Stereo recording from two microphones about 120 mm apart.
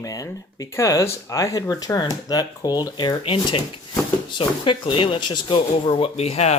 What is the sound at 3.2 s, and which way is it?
Speech, 50° left (ahead or behind).